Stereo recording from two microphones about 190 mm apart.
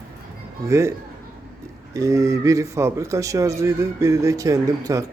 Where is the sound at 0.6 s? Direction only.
15° right (ahead or behind).